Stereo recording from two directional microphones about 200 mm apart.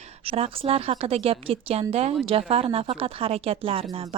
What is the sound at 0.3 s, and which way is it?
A woman's voice, 30° right (ahead or behind).